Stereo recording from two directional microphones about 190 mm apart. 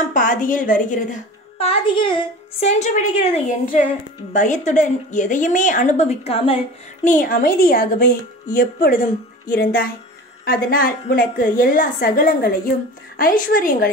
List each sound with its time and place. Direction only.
0.1 s a woman's voice: 45° left (ahead or behind)
7.1 s a woman's voice: 45° left (ahead or behind)